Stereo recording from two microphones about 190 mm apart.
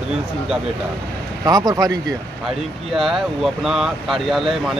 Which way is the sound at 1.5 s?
20° right (ahead or behind).